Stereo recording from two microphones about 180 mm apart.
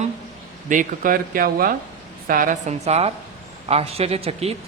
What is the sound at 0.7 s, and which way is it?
A man's voice, 50° right (ahead or behind).